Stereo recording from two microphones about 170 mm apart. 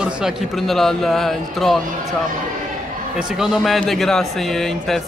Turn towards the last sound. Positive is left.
turn(degrees=0)  # may be behind; listen again after turning